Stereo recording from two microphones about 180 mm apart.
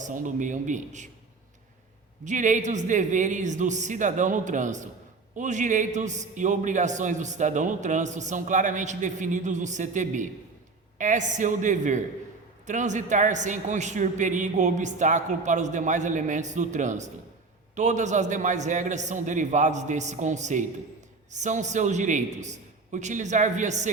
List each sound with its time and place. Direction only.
0.0 s a man's voice: 45° right (ahead or behind)
2.2 s a man's voice: 45° right (ahead or behind)